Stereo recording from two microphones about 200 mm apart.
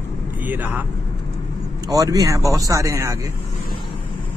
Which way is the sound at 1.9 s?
15° right (ahead or behind).